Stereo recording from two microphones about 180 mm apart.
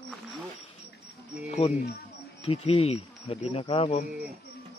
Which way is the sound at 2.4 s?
35° left (ahead or behind).